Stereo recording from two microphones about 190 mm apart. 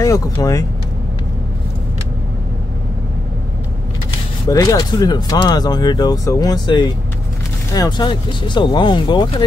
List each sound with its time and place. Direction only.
0.0 s speech: 15° left (ahead or behind)
4.5 s speech: 20° left (ahead or behind)